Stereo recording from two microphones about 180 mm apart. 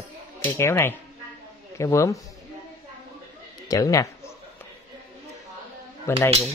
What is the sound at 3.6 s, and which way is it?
Speech, 20° left (ahead or behind).